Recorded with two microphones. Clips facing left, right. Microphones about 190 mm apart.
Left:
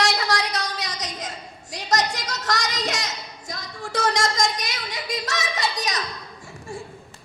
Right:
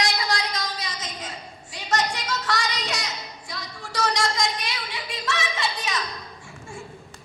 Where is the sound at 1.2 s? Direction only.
40° left (ahead or behind).